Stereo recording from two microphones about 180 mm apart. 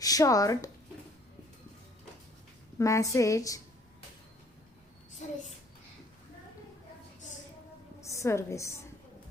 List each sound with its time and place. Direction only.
0.0 s speech: 20° left (ahead or behind)
2.7 s a woman's voice: 15° left (ahead or behind)
8.0 s a woman's voice: 15° left (ahead or behind)